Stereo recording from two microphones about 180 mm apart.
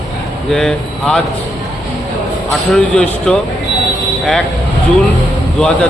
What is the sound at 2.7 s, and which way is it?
Speech, 5° left (ahead or behind).